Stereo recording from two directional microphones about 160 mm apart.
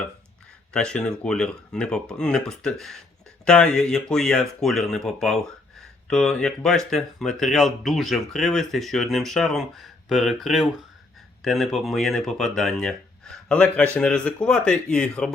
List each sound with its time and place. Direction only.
0.7 s speech: 5° left (ahead or behind)